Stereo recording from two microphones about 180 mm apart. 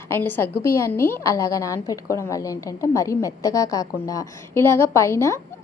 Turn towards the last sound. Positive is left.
turn(degrees=15)  # may be behind; listen again after turning